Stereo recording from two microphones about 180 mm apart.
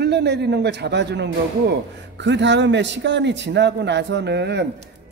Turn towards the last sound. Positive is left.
turn(degrees=-70)  # may be behind; listen again after turning